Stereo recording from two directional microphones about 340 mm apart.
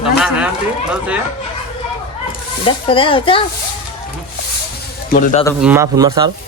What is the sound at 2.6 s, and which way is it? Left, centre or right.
Speech, centre.